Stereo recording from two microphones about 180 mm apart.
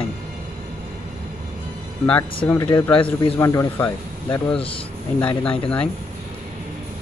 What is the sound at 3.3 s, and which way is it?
Speech, 15° left (ahead or behind).